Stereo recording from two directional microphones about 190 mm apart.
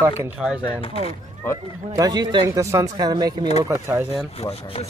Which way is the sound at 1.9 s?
20° right (ahead or behind).